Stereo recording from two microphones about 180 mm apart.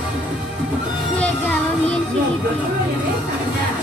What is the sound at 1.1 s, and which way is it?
Music, 10° left (ahead or behind).